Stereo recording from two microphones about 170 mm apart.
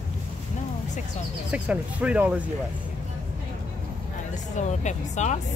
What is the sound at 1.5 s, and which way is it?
Speech, 10° right (ahead or behind).